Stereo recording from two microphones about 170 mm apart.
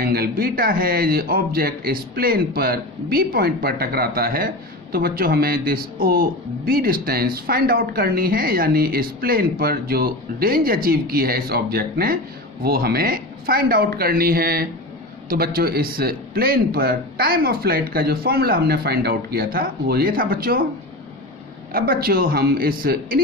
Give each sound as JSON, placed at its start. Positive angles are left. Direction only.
{"t": 0.0, "sound": "speech", "side_deg": -60}
{"t": 21.7, "sound": "speech", "side_deg": -60}